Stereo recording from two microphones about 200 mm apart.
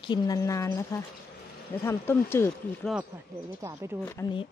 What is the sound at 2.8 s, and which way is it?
Speech, centre (ahead or behind).